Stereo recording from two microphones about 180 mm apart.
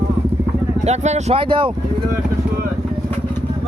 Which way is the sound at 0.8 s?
40° right (ahead or behind).